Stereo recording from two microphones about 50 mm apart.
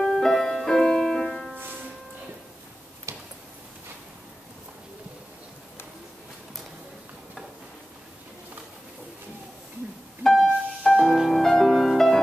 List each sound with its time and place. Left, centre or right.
0.0 s music: centre
3.1 s tick-tock: right
10.2 s music: centre